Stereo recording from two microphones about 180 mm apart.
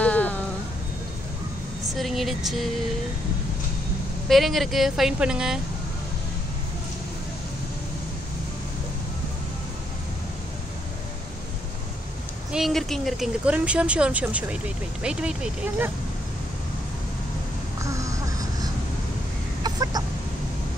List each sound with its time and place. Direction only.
0.0 s a sound: 10° left (ahead or behind)
2.0 s speech: centre (ahead or behind)
4.3 s a woman's voice: centre (ahead or behind)
12.5 s a woman's voice: centre (ahead or behind)
17.8 s a sound: 15° right (ahead or behind)
19.6 s chicken: 20° right (ahead or behind)